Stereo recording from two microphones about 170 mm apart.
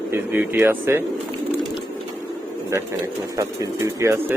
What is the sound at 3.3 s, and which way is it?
Speech, 20° right (ahead or behind).